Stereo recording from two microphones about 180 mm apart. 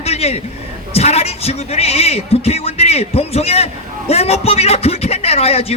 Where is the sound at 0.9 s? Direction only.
35° left (ahead or behind).